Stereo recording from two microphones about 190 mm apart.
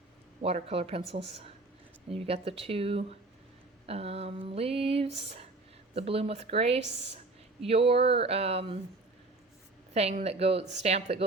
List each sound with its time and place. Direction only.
0.4 s speech: 30° right (ahead or behind)
9.9 s speech: 35° right (ahead or behind)